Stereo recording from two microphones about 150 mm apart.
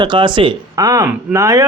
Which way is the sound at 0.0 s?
30° right (ahead or behind).